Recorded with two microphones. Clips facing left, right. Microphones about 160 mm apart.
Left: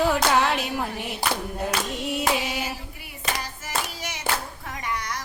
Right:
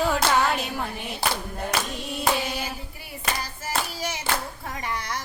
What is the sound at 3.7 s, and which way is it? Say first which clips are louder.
Clapping: right 3 dB; 35° right (ahead or behind).